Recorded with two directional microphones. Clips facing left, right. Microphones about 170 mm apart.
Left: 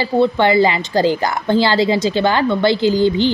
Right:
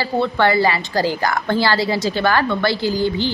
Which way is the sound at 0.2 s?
20° left (ahead or behind).